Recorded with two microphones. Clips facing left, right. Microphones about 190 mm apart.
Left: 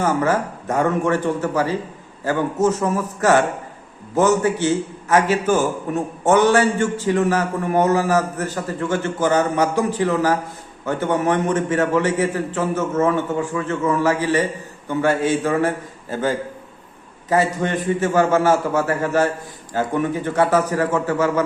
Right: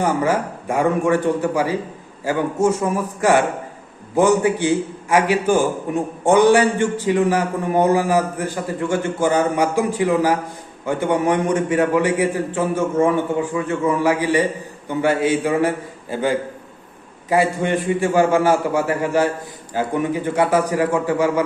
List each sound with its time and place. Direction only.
0.0 s a man's voice: 15° right (ahead or behind)